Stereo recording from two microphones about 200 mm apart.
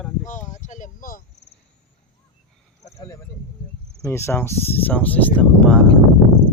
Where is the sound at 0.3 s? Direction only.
35° left (ahead or behind).